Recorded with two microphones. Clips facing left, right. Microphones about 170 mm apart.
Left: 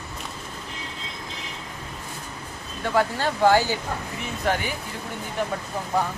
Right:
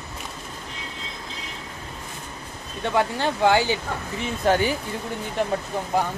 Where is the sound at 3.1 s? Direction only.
20° right (ahead or behind).